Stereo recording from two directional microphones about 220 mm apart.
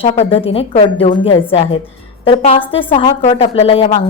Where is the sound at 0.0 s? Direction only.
25° left (ahead or behind).